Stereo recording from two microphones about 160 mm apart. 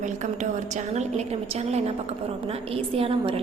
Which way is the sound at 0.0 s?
50° right (ahead or behind).